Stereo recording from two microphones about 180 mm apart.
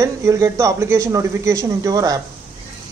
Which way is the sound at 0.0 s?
15° right (ahead or behind).